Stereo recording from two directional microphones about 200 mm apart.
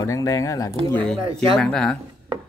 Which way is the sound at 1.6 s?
5° left (ahead or behind).